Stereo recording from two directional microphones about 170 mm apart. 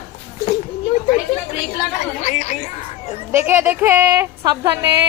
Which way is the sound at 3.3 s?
10° right (ahead or behind).